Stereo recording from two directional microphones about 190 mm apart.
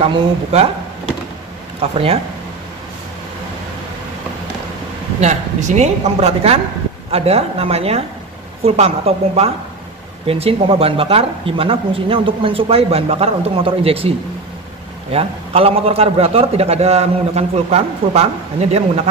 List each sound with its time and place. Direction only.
0.0 s a man's voice: 30° right (ahead or behind)
1.8 s speech: 30° right (ahead or behind)
5.2 s a man's voice: 40° right (ahead or behind)